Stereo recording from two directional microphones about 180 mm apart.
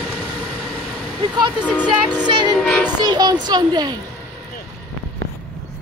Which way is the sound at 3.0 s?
20° right (ahead or behind).